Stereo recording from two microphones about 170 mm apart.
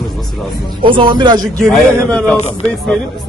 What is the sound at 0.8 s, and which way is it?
Speech, 30° right (ahead or behind).